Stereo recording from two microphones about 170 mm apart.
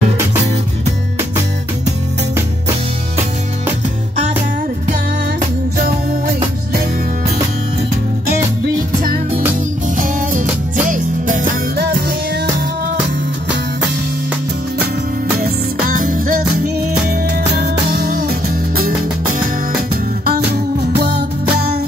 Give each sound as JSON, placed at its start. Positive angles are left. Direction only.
{"t": 9.9, "sound": "music", "side_deg": -50}
{"t": 15.3, "sound": "music", "side_deg": -60}
{"t": 20.2, "sound": "music", "side_deg": -70}